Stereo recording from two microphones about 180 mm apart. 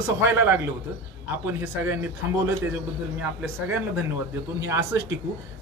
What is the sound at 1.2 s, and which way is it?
Speech, 10° right (ahead or behind).